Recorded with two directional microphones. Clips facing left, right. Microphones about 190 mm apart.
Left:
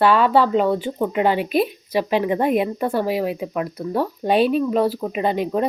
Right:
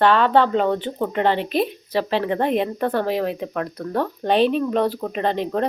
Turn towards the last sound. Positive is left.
turn(degrees=10)  # may be behind; listen again after turning